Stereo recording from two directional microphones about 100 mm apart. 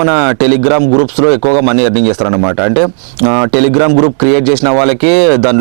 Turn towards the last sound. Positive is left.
turn(degrees=-10)  # may be behind; listen again after turning